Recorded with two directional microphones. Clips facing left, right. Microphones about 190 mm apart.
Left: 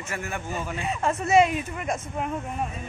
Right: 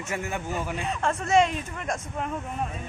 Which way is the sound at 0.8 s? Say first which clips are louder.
Left 1 dB; 5° left (ahead or behind).